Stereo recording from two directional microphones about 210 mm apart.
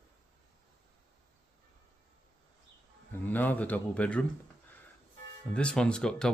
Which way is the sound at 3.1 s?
10° left (ahead or behind).